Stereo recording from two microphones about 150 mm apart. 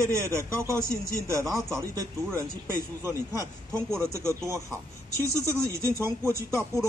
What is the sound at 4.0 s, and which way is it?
Speech, 15° right (ahead or behind).